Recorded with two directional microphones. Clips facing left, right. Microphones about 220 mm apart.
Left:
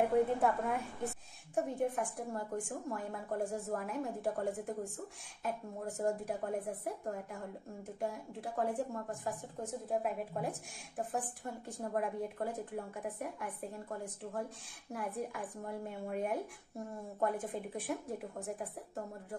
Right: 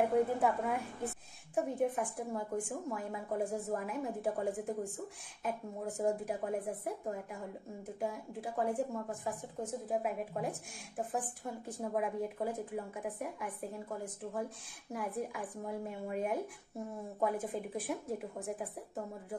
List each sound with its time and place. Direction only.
0.4 s a woman's voice: centre (ahead or behind)